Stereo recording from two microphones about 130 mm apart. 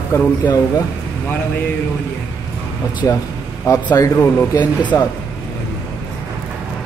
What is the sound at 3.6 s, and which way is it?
Speech, 25° left (ahead or behind).